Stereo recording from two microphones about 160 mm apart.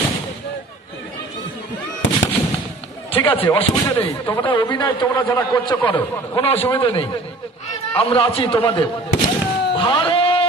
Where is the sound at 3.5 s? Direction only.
35° left (ahead or behind).